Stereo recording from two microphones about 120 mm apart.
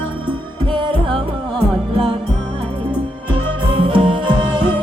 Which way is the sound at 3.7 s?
45° right (ahead or behind).